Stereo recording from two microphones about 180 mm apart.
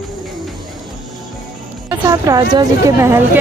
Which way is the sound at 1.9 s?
20° right (ahead or behind).